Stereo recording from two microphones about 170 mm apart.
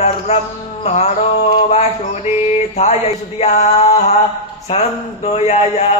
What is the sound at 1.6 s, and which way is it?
A man's voice, 40° left (ahead or behind).